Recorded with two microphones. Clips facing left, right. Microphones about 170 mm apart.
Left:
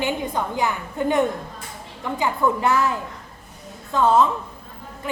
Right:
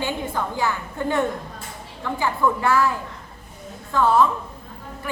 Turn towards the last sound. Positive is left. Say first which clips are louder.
# left 1 dB
turn(degrees=20)  # may be behind; listen again after turning